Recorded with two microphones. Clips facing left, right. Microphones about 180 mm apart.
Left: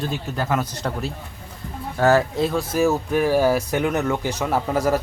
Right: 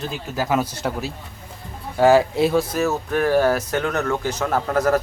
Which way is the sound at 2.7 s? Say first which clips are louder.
Left 2 dB; 10° left (ahead or behind).